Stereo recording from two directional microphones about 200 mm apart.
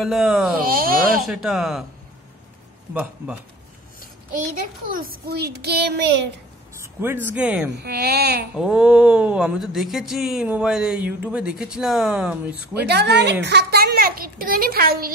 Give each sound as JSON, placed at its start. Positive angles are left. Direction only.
{"t": 0.0, "sound": "speech", "side_deg": 0}
{"t": 0.6, "sound": "speech", "side_deg": -45}
{"t": 1.2, "sound": "speech", "side_deg": 0}
{"t": 2.9, "sound": "a man's voice", "side_deg": -5}
{"t": 4.9, "sound": "a child's voice", "side_deg": -45}
{"t": 6.7, "sound": "speech", "side_deg": -10}
{"t": 7.8, "sound": "speech", "side_deg": -55}
{"t": 8.5, "sound": "speech", "side_deg": -5}
{"t": 12.8, "sound": "a child's voice", "side_deg": -55}